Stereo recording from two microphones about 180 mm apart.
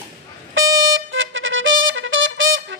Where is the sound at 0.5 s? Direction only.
90° right.